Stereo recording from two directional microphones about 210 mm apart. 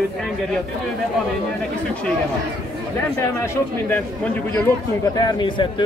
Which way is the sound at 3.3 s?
15° left (ahead or behind).